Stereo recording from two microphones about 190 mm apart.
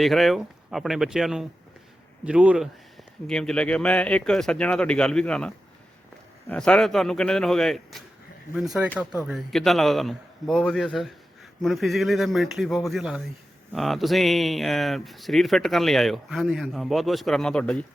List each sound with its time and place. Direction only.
0.0 s a man's voice: centre (ahead or behind)